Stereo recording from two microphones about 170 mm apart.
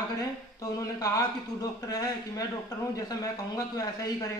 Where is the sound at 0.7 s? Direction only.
20° left (ahead or behind).